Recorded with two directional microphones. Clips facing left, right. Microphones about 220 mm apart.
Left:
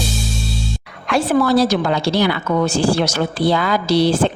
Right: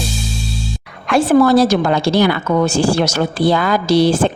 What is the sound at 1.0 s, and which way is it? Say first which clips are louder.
A woman's voice: right 5 dB; 50° right (ahead or behind).